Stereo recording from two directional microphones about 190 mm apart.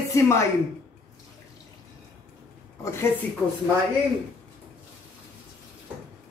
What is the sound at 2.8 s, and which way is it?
Speech, 15° left (ahead or behind).